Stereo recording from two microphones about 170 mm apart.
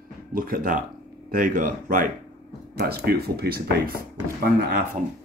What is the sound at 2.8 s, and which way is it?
Speech, 65° right (ahead or behind).